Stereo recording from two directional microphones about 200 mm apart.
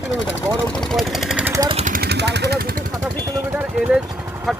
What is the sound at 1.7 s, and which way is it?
Speech, 40° right (ahead or behind).